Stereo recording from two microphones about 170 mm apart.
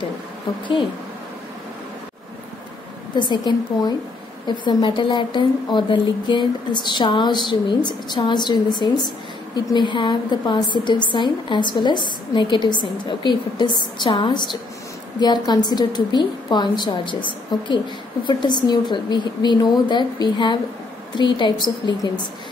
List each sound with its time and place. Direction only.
3.2 s a woman's voice: 25° left (ahead or behind)